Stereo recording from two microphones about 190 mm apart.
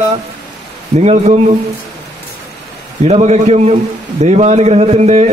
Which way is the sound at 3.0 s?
35° right (ahead or behind).